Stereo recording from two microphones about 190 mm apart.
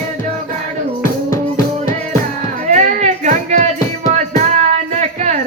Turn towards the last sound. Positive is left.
turn(degrees=-35)  # may be behind; listen again after turning